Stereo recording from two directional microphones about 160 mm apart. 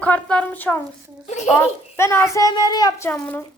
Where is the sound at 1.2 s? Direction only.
45° left (ahead or behind).